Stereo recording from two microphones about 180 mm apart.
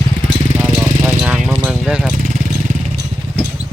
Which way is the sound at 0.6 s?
5° right (ahead or behind).